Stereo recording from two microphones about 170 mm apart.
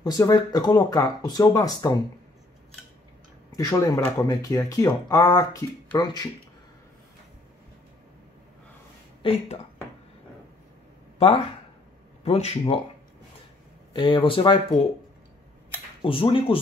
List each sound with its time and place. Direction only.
0.0 s speech: 25° left (ahead or behind)
3.5 s speech: 20° left (ahead or behind)
9.2 s speech: 35° left (ahead or behind)
11.1 s speech: 35° left (ahead or behind)
13.9 s speech: 30° left (ahead or behind)
16.0 s speech: 30° left (ahead or behind)